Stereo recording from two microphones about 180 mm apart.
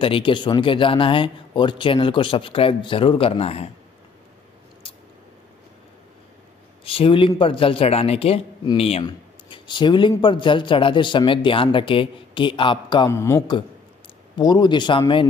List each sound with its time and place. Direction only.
0.0 s speech: 30° left (ahead or behind)
6.8 s speech: 30° left (ahead or behind)
13.1 s speech: 15° left (ahead or behind)